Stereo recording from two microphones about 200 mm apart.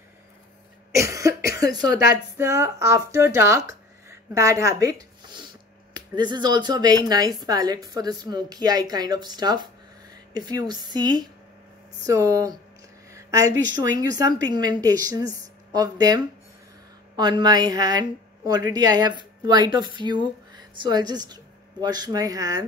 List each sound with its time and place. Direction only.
0.9 s cough: 15° right (ahead or behind)
1.5 s speech: 20° right (ahead or behind)
5.2 s a sound: 20° right (ahead or behind)
5.9 s speech: 20° right (ahead or behind)
13.1 s a sound: 15° right (ahead or behind)
13.7 s speech: 20° right (ahead or behind)